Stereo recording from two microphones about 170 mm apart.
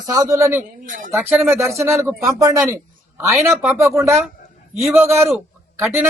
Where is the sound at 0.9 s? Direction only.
50° right (ahead or behind).